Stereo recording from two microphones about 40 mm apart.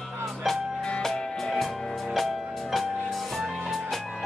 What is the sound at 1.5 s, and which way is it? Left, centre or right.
Music, centre.